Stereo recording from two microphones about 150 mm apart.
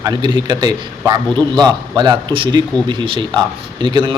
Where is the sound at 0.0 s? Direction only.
30° right (ahead or behind).